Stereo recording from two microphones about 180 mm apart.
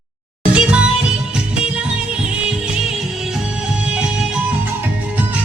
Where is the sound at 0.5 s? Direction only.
5° right (ahead or behind).